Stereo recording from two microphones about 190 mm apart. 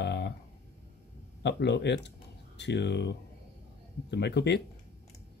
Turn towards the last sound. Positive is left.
turn(degrees=60)  # may be behind; listen again after turning